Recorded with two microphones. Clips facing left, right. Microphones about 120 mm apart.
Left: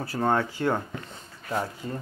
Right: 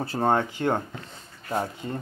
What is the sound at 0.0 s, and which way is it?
Speech, 30° right (ahead or behind).